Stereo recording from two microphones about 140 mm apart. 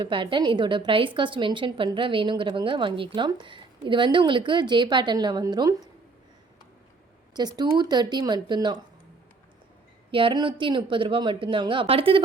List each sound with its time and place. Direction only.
0.0 s a woman's voice: 35° right (ahead or behind)
7.3 s a woman's voice: 30° right (ahead or behind)
10.1 s a woman's voice: 35° right (ahead or behind)